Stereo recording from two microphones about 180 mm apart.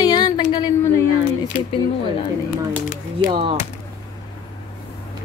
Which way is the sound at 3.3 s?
35° right (ahead or behind).